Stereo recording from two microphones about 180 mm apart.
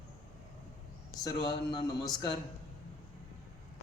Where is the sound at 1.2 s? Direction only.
20° left (ahead or behind).